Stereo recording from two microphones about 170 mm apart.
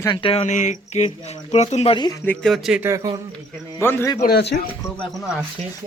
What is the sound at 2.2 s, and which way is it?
Speech, centre (ahead or behind).